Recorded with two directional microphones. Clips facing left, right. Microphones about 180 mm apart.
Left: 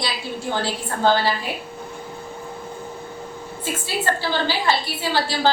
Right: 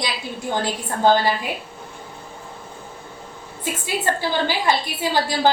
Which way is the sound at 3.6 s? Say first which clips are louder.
Right 1 dB; 15° right (ahead or behind).